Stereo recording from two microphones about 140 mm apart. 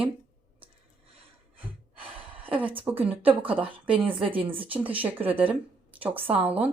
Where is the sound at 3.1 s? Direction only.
10° right (ahead or behind).